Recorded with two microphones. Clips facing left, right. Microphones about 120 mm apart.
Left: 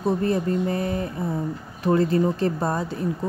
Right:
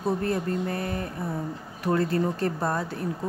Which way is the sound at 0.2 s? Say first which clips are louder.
Left 4 dB; 20° left (ahead or behind).